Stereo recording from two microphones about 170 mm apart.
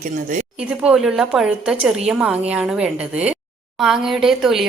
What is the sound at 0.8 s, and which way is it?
A woman's voice, 5° right (ahead or behind).